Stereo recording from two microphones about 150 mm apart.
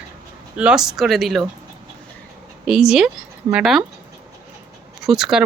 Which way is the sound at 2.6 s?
5° right (ahead or behind).